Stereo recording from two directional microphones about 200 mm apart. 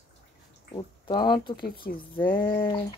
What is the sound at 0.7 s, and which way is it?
Speech, 20° left (ahead or behind).